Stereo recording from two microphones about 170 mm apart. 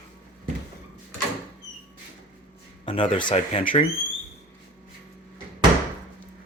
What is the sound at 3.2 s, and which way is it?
Speech, 35° left (ahead or behind).